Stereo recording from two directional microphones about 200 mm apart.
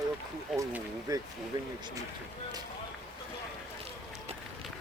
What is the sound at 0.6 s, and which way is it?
Speech, 15° right (ahead or behind).